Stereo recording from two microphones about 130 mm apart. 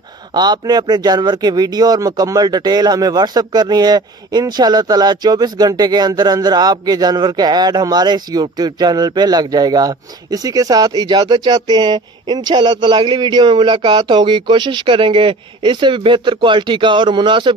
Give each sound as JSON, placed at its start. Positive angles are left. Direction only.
{"t": 0.3, "sound": "speech", "side_deg": -30}